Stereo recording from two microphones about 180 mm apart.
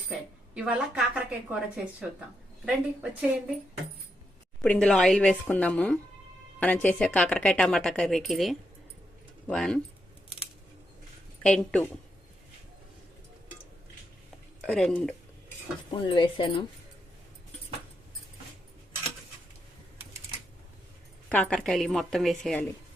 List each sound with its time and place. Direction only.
0.1 s a woman's voice: 5° right (ahead or behind)
4.6 s a woman's voice: 5° left (ahead or behind)
11.4 s a woman's voice: 5° left (ahead or behind)
14.7 s a woman's voice: 5° left (ahead or behind)
15.9 s speech: 30° left (ahead or behind)
21.2 s a woman's voice: 5° left (ahead or behind)